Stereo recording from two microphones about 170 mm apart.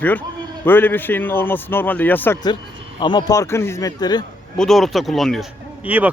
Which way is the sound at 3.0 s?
25° left (ahead or behind).